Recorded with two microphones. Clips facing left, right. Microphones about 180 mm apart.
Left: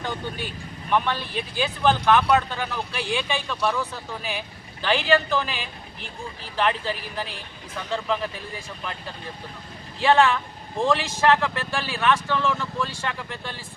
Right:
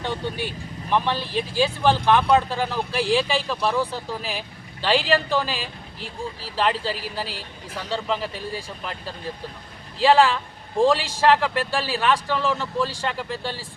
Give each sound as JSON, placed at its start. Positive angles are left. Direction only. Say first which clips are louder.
{"t": 0.0, "sound": "speech", "louder": "right 3 dB", "side_deg": -30}
{"t": 10.0, "sound": "speech", "louder": "right 2 dB", "side_deg": -35}